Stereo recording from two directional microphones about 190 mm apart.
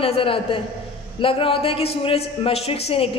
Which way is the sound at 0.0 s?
30° left (ahead or behind).